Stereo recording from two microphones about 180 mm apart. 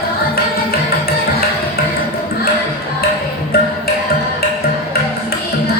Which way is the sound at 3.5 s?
60° left (ahead or behind).